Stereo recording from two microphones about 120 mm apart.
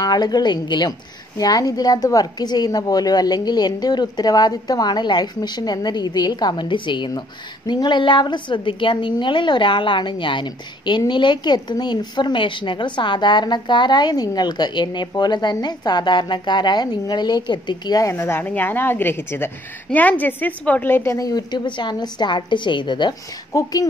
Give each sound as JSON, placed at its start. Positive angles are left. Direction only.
{"t": 0.0, "sound": "a woman's voice", "side_deg": 35}
{"t": 18.1, "sound": "a woman's voice", "side_deg": 20}
{"t": 23.5, "sound": "a woman's voice", "side_deg": 30}